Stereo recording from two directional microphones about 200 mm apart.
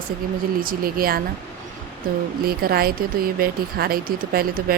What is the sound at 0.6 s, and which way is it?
Speech, 45° right (ahead or behind).